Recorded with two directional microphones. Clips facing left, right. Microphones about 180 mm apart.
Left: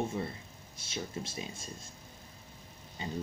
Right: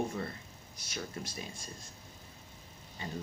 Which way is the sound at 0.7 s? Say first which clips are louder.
Left 2 dB; 25° left (ahead or behind).